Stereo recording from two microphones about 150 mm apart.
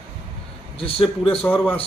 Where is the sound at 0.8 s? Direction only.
40° left (ahead or behind).